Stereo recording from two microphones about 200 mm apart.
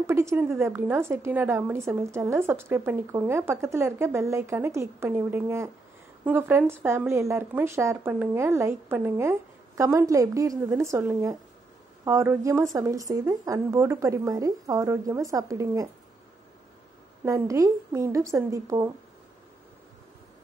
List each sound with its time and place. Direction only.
0.0 s a woman's voice: 15° right (ahead or behind)
17.2 s a woman's voice: 15° right (ahead or behind)